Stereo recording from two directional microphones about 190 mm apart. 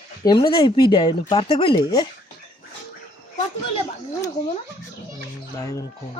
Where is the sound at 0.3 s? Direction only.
20° left (ahead or behind).